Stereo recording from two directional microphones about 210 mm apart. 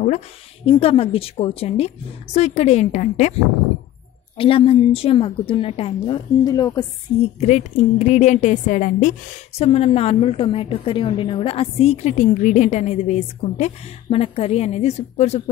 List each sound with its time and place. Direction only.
0.7 s a woman's voice: 25° left (ahead or behind)
4.4 s a woman's voice: 25° left (ahead or behind)